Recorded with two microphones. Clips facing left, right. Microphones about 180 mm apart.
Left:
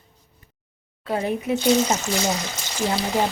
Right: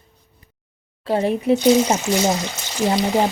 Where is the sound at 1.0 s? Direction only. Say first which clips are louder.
Right 6 dB; 30° right (ahead or behind).